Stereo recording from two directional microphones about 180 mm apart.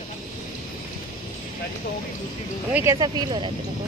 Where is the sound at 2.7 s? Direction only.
15° right (ahead or behind).